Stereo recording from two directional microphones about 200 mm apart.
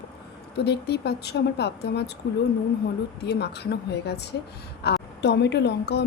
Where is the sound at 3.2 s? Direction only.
55° left (ahead or behind).